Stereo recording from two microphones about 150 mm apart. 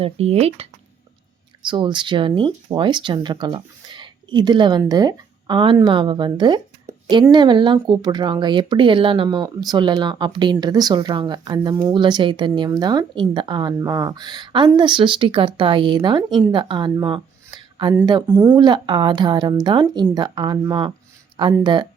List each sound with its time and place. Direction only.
0.0 s speech: 45° right (ahead or behind)
1.6 s speech: 30° right (ahead or behind)
16.9 s a sound: 25° right (ahead or behind)
18.0 s speech: 30° right (ahead or behind)